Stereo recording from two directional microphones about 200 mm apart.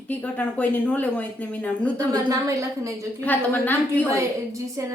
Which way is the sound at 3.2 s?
10° left (ahead or behind).